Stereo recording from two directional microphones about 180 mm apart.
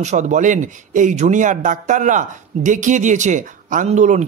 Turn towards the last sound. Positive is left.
turn(degrees=-40)  # may be behind; listen again after turning